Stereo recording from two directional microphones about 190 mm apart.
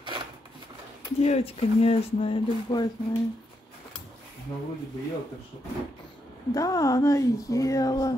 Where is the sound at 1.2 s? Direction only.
35° left (ahead or behind).